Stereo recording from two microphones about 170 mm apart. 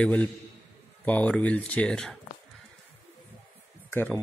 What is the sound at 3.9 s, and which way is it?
Speech, 10° left (ahead or behind).